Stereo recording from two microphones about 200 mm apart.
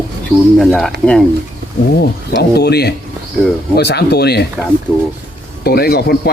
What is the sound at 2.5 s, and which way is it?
Speech, 55° left (ahead or behind).